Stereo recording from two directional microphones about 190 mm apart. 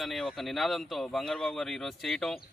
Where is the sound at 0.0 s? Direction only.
Centre (ahead or behind).